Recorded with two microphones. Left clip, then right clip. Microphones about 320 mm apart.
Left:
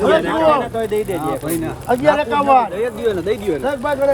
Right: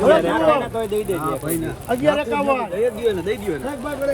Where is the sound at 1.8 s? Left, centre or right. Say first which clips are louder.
Left 4 dB; left.